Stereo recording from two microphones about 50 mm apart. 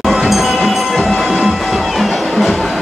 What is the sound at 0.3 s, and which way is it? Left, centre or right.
Music, centre.